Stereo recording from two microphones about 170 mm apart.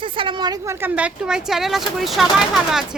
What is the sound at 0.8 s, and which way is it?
Speech, 10° right (ahead or behind).